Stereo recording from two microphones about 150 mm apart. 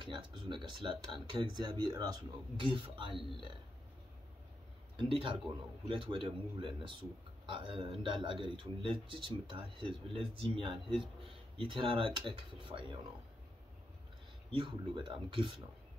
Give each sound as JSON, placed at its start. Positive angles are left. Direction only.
{"t": 0.0, "sound": "speech", "side_deg": -30}
{"t": 4.9, "sound": "speech", "side_deg": -35}
{"t": 14.5, "sound": "speech", "side_deg": -35}